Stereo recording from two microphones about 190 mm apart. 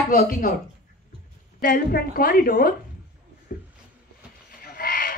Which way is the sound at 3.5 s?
50° left (ahead or behind).